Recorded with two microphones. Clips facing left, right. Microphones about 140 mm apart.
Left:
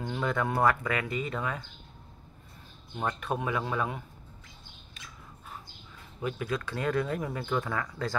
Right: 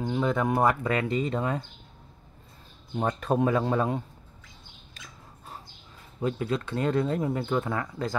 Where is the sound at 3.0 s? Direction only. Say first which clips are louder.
Right 6 dB; 35° right (ahead or behind).